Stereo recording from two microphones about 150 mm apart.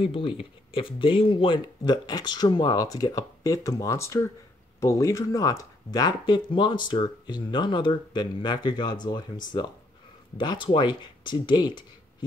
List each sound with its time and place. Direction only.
0.0 s speech: 40° left (ahead or behind)
10.3 s speech: 30° left (ahead or behind)